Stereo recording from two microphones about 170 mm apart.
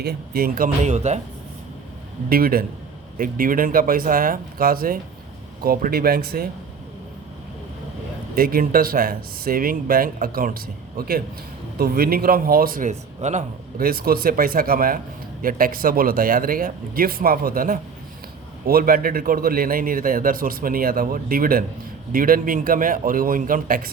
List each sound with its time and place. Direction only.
0.0 s a man's voice: 70° right (ahead or behind); by 1.2 s 40° right (ahead or behind)
2.3 s a man's voice: 60° right (ahead or behind)
8.4 s a man's voice: 60° right (ahead or behind)
12.9 s speech: 45° right (ahead or behind)
13.7 s a man's voice: 60° right (ahead or behind)